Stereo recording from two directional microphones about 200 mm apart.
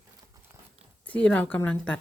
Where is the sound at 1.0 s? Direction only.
10° left (ahead or behind).